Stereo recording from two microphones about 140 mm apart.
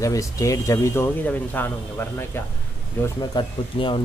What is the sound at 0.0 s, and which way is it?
Speech, 25° left (ahead or behind).